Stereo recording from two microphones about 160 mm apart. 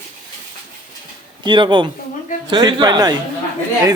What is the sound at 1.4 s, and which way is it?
A man's voice, 30° right (ahead or behind).